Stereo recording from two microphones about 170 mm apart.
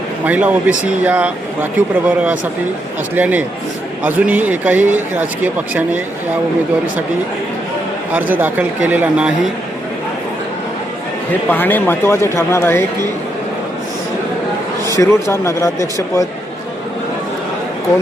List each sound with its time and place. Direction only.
0.3 s speech: 10° right (ahead or behind)
8.1 s speech: 10° right (ahead or behind)
11.3 s a man's voice: 10° left (ahead or behind)
14.9 s a man's voice: 15° left (ahead or behind)